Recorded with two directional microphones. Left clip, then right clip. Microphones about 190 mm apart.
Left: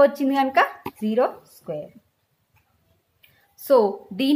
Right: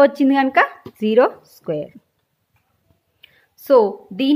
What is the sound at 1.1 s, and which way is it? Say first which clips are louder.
Speech: right 7 dB; 50° right (ahead or behind).